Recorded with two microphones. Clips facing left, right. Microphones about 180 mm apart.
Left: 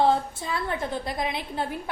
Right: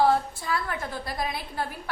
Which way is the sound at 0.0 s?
20° left (ahead or behind).